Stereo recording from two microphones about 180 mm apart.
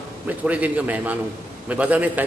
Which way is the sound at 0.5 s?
10° right (ahead or behind).